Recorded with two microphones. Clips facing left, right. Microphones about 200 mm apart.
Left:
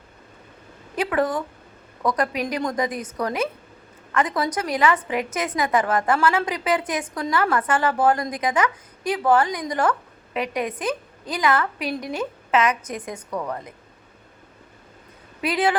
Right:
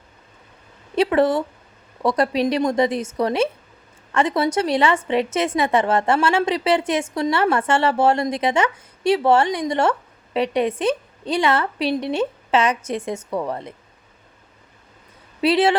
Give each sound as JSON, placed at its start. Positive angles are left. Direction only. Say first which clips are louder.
{"t": 0.9, "sound": "a woman's voice", "louder": "right 5 dB", "side_deg": -25}
{"t": 15.4, "sound": "a woman's voice", "louder": "right 5 dB", "side_deg": -25}